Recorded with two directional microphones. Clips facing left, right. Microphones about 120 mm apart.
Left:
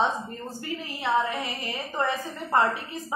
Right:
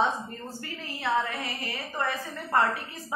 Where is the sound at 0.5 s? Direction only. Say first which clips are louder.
Left 4 dB; 15° left (ahead or behind).